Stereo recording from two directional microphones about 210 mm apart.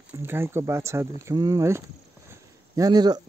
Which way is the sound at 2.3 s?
15° right (ahead or behind).